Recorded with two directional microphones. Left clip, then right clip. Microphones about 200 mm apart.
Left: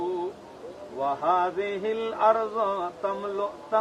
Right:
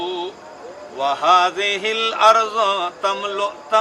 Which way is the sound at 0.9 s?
25° right (ahead or behind).